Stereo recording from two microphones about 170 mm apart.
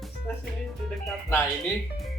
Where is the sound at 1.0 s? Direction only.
15° left (ahead or behind).